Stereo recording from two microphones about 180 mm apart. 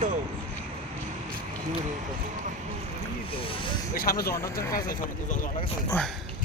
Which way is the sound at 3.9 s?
55° left (ahead or behind).